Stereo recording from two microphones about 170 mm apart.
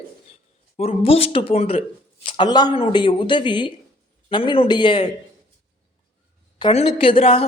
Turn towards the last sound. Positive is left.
turn(degrees=30)  # may be behind; listen again after turning